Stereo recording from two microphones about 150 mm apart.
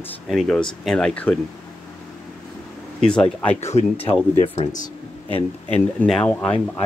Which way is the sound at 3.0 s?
5° left (ahead or behind).